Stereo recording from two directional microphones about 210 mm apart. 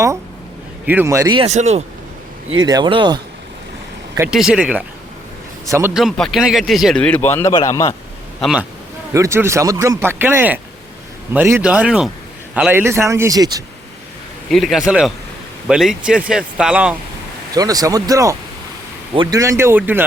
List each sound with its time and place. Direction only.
0.9 s speech: 10° right (ahead or behind); by 1.8 s 30° right (ahead or behind)
2.6 s speech: 20° right (ahead or behind)
4.2 s speech: centre (ahead or behind)
5.9 s speech: centre (ahead or behind); by 7.9 s 15° left (ahead or behind)
8.4 s speech: centre (ahead or behind)
9.1 s speech: 15° right (ahead or behind)
14.5 s speech: centre (ahead or behind)
17.5 s speech: 15° right (ahead or behind)